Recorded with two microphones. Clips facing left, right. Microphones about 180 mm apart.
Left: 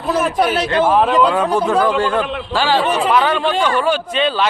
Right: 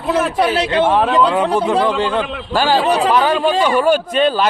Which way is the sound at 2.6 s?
35° right (ahead or behind).